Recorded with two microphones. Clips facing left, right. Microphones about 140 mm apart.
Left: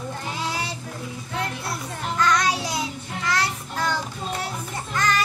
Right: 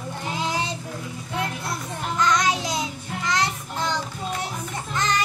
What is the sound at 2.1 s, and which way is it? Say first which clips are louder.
Child singing: even; 20° right (ahead or behind).